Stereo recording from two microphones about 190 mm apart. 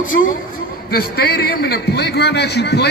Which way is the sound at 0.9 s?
55° left (ahead or behind).